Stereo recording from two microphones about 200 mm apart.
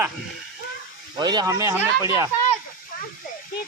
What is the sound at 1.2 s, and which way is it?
Speech, 20° right (ahead or behind).